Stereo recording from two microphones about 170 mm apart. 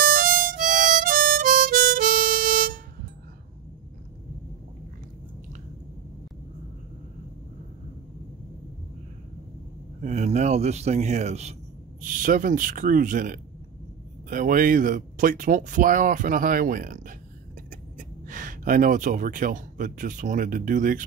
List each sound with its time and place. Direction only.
0.0 s harmonica: 55° right (ahead or behind)
9.9 s a man's voice: 40° right (ahead or behind)
12.0 s speech: 55° right (ahead or behind)